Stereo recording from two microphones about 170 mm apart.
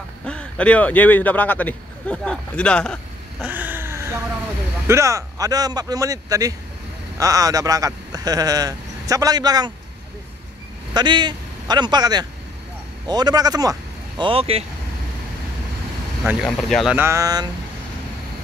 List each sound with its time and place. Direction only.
0.2 s speech: 5° left (ahead or behind)
3.4 s a sound: 10° right (ahead or behind)
4.8 s speech: 15° right (ahead or behind)
10.9 s a man's voice: 25° right (ahead or behind)
16.4 s speech: 5° left (ahead or behind)
16.9 s speech: 15° right (ahead or behind)